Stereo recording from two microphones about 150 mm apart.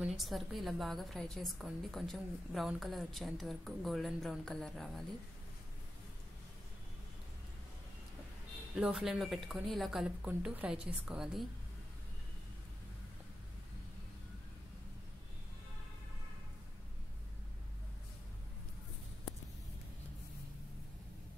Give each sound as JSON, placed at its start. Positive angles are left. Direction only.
{"t": 0.0, "sound": "a woman's voice", "side_deg": 0}
{"t": 8.7, "sound": "a woman's voice", "side_deg": -5}